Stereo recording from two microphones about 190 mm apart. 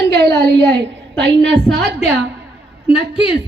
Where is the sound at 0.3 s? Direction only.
65° right (ahead or behind).